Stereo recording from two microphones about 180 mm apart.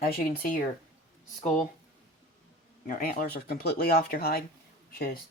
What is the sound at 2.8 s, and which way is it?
Speech, 50° left (ahead or behind).